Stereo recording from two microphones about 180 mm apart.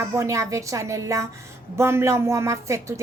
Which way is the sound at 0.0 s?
15° right (ahead or behind).